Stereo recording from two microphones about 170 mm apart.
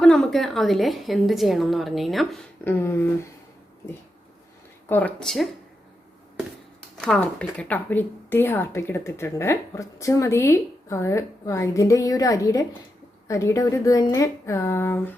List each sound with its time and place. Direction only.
0.0 s a woman's voice: 5° left (ahead or behind)
2.6 s speech: 15° left (ahead or behind)
4.9 s speech: 10° left (ahead or behind)
6.9 s speech: 5° left (ahead or behind)